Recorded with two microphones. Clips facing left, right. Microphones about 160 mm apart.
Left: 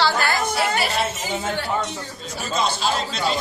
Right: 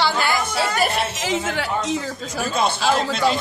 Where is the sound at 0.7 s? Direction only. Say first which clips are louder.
Right 2 dB; 50° right (ahead or behind).